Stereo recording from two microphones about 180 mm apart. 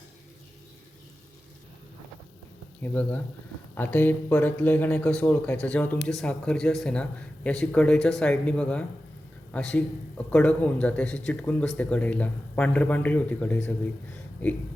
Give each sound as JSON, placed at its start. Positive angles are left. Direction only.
{"t": 2.8, "sound": "speech", "side_deg": 10}